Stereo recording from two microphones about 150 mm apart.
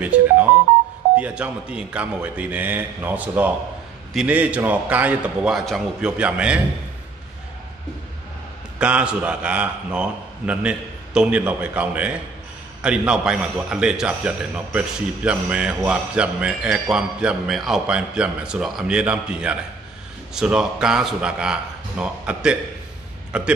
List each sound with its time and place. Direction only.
0.0 s music: 10° right (ahead or behind)
1.1 s a man's voice: 10° right (ahead or behind)
8.7 s a man's voice: 5° right (ahead or behind)